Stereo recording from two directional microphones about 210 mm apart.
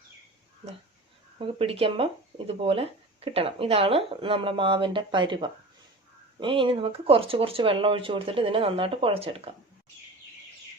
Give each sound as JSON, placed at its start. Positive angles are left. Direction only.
{"t": 1.4, "sound": "speech", "side_deg": -25}